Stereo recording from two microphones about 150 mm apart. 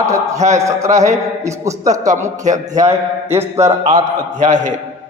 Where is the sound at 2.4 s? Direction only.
55° right (ahead or behind).